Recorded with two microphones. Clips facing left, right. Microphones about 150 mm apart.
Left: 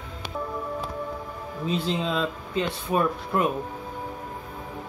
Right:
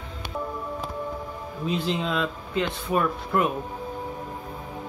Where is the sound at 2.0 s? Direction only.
30° left (ahead or behind).